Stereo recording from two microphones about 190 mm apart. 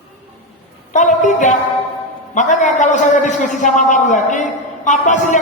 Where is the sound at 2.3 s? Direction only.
40° left (ahead or behind).